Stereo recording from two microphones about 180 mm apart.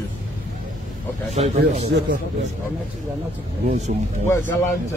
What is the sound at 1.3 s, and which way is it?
Speech, 35° right (ahead or behind).